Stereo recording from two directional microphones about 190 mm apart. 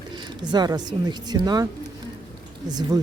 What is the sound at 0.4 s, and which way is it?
Speech, 20° right (ahead or behind).